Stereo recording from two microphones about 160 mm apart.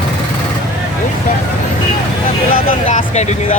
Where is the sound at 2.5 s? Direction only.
55° left (ahead or behind).